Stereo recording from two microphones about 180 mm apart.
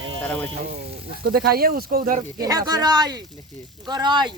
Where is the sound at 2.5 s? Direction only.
20° right (ahead or behind).